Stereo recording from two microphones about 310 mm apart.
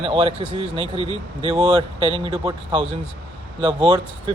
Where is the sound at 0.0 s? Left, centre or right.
Centre.